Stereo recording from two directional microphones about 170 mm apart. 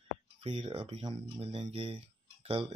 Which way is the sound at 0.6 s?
30° right (ahead or behind).